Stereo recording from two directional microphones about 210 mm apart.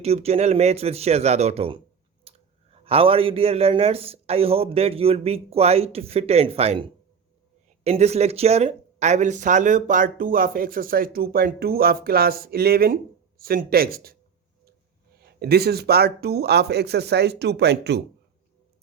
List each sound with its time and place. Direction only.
0.0 s speech: 30° right (ahead or behind)
7.9 s speech: 30° right (ahead or behind)
15.2 s speech: 50° right (ahead or behind)